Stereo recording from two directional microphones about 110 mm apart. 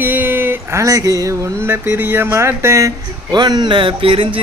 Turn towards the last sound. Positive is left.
turn(degrees=-55)  # may be behind; listen again after turning